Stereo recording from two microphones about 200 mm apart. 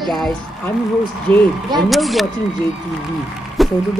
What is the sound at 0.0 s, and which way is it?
Speech, centre (ahead or behind).